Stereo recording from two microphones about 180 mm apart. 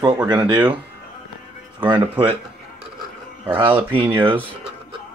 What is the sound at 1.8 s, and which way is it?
Speech, 10° right (ahead or behind).